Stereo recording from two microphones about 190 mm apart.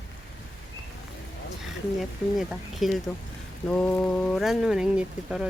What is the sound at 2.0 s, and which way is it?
Speech, centre (ahead or behind).